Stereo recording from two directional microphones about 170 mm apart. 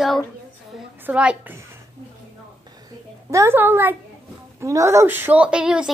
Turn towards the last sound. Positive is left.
turn(degrees=-5)  # may be behind; listen again after turning